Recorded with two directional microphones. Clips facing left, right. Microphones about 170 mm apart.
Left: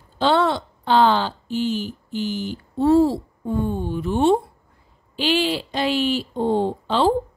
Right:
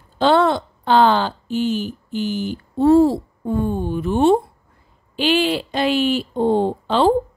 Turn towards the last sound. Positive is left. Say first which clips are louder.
# right 3 dB
turn(degrees=-50)  # may be behind; listen again after turning